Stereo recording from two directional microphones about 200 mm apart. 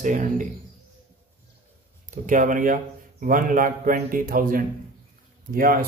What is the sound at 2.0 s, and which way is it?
A man's voice, 40° right (ahead or behind).